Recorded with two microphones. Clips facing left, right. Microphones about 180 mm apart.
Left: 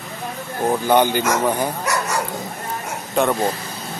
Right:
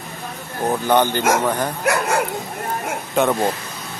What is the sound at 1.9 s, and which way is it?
Bow-wow, 55° right (ahead or behind).